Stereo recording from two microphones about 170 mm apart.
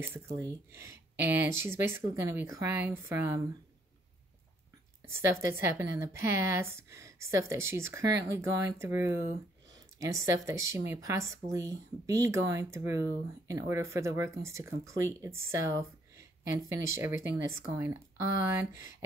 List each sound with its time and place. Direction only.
0.4 s speech: 15° right (ahead or behind)
5.0 s speech: 15° right (ahead or behind)